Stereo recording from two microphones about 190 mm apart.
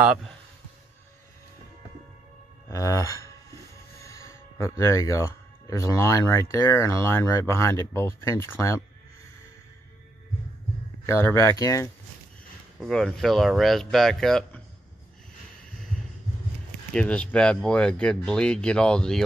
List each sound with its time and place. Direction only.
0.0 s speech: 5° right (ahead or behind)
2.7 s speech: 15° left (ahead or behind)
11.1 s speech: 15° left (ahead or behind)
12.7 s speech: centre (ahead or behind)
16.9 s speech: 5° left (ahead or behind)